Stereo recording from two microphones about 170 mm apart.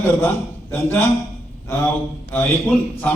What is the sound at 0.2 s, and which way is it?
Speech, 10° left (ahead or behind).